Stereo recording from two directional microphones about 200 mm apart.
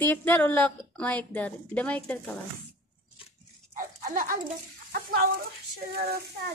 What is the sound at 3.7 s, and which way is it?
Dog, 45° right (ahead or behind).